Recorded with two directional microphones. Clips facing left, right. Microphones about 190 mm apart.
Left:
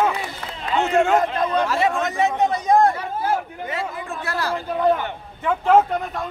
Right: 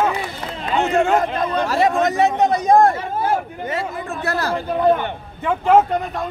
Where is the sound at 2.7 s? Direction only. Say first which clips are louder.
Right 3 dB; 50° right (ahead or behind).